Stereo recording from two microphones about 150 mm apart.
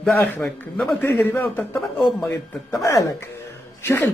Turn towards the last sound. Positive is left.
turn(degrees=15)  # may be behind; listen again after turning